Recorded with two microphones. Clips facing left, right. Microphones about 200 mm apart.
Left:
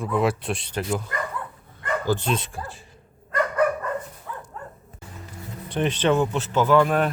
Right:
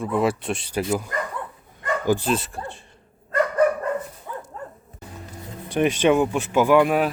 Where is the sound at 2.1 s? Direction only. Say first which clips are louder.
Right 4 dB; 5° right (ahead or behind).